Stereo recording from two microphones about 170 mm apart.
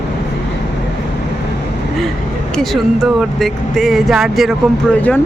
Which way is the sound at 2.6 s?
Centre (ahead or behind).